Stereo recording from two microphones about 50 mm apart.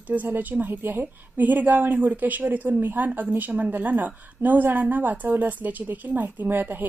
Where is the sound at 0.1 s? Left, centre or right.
Right.